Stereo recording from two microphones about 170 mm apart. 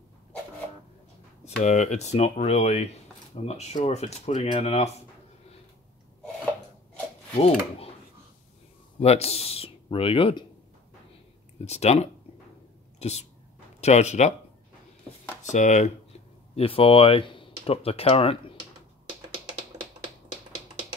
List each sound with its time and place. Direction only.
1.6 s speech: 45° left (ahead or behind)
7.3 s speech: 40° left (ahead or behind)
9.0 s speech: 40° left (ahead or behind)
11.5 s speech: 40° left (ahead or behind)
15.4 s speech: 45° left (ahead or behind)
16.5 s speech: 35° left (ahead or behind)